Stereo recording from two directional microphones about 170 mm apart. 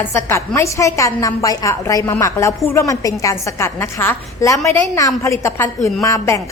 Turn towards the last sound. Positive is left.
turn(degrees=20)  # may be behind; listen again after turning